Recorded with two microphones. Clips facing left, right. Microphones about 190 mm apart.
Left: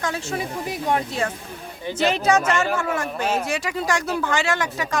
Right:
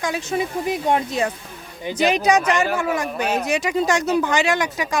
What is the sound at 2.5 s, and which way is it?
Speech, centre (ahead or behind).